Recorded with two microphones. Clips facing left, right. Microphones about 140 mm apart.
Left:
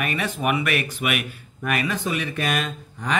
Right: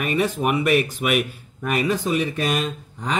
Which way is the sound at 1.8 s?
30° right (ahead or behind).